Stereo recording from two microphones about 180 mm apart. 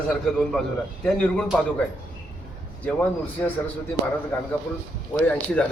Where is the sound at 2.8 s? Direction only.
5° left (ahead or behind).